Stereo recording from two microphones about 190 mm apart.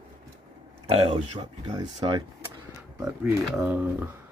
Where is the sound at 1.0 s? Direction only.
25° right (ahead or behind).